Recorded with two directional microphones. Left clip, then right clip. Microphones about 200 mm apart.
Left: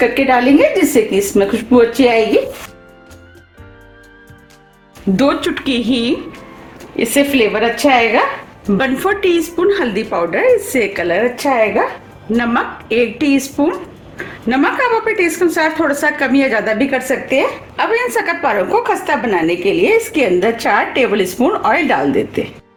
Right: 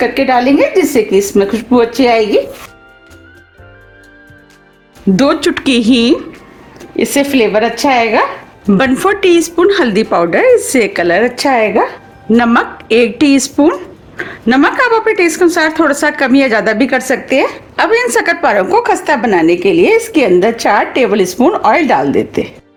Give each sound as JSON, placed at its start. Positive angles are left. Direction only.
{"t": 0.0, "sound": "a woman's voice", "side_deg": -35}
{"t": 5.1, "sound": "a woman's voice", "side_deg": -50}